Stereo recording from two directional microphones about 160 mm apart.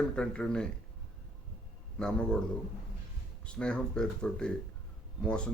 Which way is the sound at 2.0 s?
5° left (ahead or behind).